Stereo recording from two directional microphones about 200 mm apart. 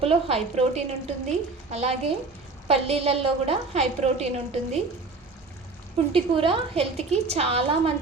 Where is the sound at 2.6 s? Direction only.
30° right (ahead or behind).